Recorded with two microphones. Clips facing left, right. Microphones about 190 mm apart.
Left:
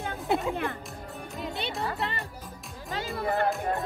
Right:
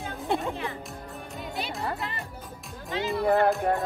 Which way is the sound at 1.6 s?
30° left (ahead or behind).